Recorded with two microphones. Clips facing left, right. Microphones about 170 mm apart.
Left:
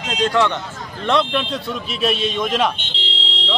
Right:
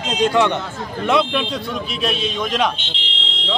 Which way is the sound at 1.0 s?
5° right (ahead or behind).